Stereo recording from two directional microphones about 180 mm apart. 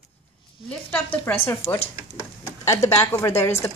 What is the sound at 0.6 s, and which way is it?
Speech, 10° left (ahead or behind).